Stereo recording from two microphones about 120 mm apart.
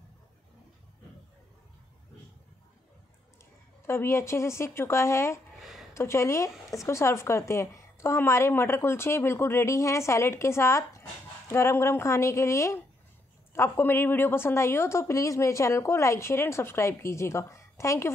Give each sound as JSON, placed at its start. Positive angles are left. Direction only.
{"t": 3.8, "sound": "speech", "side_deg": 20}
{"t": 5.6, "sound": "a sound", "side_deg": 0}
{"t": 5.9, "sound": "speech", "side_deg": 25}